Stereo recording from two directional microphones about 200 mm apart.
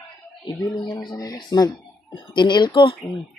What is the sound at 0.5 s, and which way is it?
Speech, 20° left (ahead or behind).